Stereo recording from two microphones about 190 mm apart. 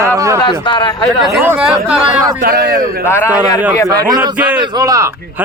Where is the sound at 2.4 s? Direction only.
55° right (ahead or behind).